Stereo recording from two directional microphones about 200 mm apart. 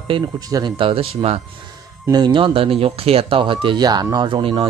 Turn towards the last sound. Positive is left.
turn(degrees=-25)  # may be behind; listen again after turning